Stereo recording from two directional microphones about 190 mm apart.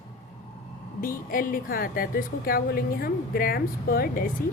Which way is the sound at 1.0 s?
50° left (ahead or behind).